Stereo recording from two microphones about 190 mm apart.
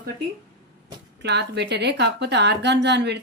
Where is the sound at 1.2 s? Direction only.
65° right (ahead or behind).